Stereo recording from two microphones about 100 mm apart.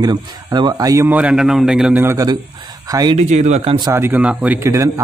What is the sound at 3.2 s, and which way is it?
Speech, 90° right.